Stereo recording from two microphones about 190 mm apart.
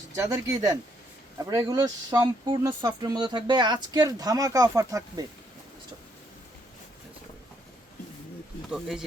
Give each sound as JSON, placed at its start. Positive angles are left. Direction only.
{"t": 0.2, "sound": "speech", "side_deg": -15}
{"t": 8.7, "sound": "speech", "side_deg": 0}